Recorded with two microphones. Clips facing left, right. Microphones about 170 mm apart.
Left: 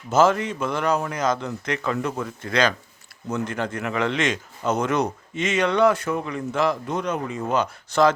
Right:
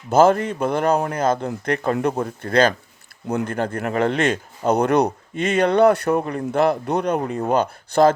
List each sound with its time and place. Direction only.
0.1 s a man's voice: 55° right (ahead or behind)
7.2 s a man's voice: 50° right (ahead or behind)